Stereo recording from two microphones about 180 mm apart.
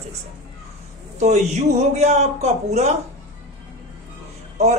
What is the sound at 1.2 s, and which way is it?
Speech, 40° right (ahead or behind).